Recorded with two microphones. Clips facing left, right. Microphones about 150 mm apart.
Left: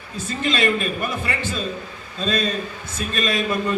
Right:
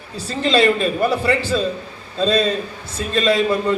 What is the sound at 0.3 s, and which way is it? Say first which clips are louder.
A man's voice: right 5 dB; 30° right (ahead or behind).